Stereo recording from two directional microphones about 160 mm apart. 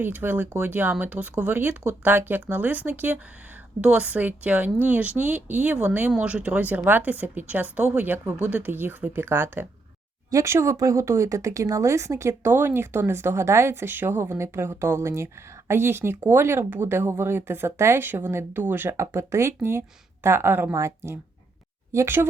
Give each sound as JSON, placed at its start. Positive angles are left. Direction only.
{"t": 0.0, "sound": "speech", "side_deg": -10}